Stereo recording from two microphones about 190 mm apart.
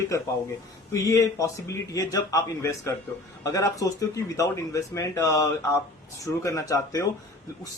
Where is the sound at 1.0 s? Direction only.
15° left (ahead or behind).